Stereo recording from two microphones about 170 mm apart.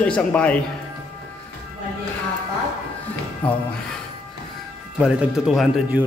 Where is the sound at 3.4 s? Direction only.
30° left (ahead or behind).